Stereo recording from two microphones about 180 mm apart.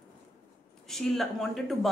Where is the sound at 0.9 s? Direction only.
Centre (ahead or behind).